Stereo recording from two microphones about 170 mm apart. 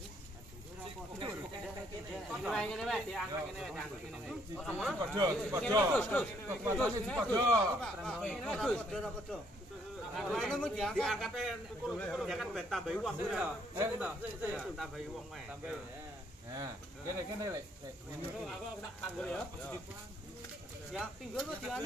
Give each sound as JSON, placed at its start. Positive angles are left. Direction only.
{"t": 2.4, "sound": "a man's voice", "side_deg": 5}
{"t": 5.1, "sound": "speech", "side_deg": -25}
{"t": 5.9, "sound": "a man's voice", "side_deg": 5}
{"t": 7.3, "sound": "speech", "side_deg": -20}
{"t": 7.8, "sound": "a man's voice", "side_deg": 5}
{"t": 16.5, "sound": "speech", "side_deg": -20}
{"t": 19.1, "sound": "a man's voice", "side_deg": 5}
{"t": 20.9, "sound": "a man's voice", "side_deg": 0}